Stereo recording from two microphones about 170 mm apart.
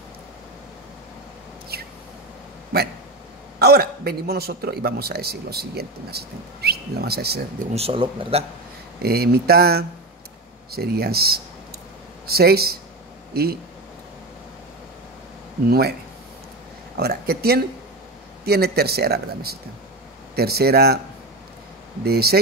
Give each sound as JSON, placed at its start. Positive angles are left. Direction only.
{"t": 1.7, "sound": "a sound", "side_deg": -65}
{"t": 3.5, "sound": "a man's voice", "side_deg": -65}
{"t": 7.7, "sound": "speech", "side_deg": -35}
{"t": 9.0, "sound": "a man's voice", "side_deg": -70}
{"t": 16.9, "sound": "a man's voice", "side_deg": -65}
{"t": 22.0, "sound": "a man's voice", "side_deg": -70}